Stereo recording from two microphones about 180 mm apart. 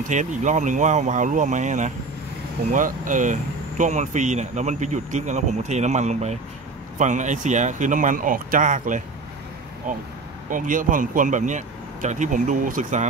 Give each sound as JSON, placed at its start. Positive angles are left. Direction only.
{"t": 0.1, "sound": "speech", "side_deg": -45}